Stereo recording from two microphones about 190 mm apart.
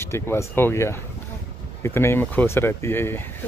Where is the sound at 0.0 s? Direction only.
15° left (ahead or behind).